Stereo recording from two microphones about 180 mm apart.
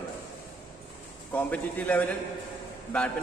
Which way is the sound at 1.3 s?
10° left (ahead or behind).